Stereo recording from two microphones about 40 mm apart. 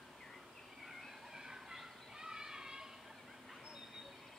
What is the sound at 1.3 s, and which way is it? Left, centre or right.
Children playing, centre.